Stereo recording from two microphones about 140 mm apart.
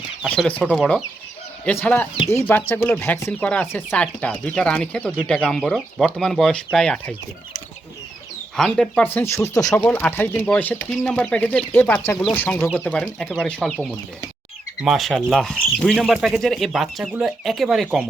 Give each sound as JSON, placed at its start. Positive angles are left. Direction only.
{"t": 0.3, "sound": "speech", "side_deg": 10}
{"t": 1.6, "sound": "speech", "side_deg": 10}
{"t": 8.5, "sound": "speech", "side_deg": 5}
{"t": 14.8, "sound": "speech", "side_deg": 0}